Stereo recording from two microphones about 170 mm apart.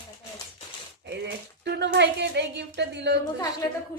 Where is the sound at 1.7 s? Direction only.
80° right.